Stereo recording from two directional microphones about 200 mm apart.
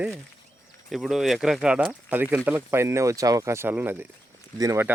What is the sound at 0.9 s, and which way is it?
Speech, centre (ahead or behind).